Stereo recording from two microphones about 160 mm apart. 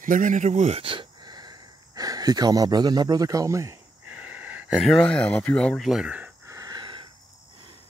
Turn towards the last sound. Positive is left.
turn(degrees=-30)  # may be behind; listen again after turning